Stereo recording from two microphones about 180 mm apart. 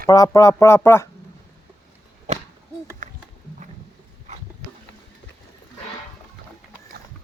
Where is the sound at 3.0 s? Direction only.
45° right (ahead or behind).